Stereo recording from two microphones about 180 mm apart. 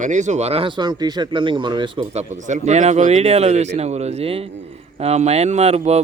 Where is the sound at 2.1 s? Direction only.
40° right (ahead or behind).